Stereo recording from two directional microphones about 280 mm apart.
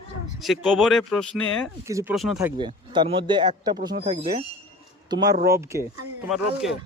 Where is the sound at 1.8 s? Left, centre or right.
Centre.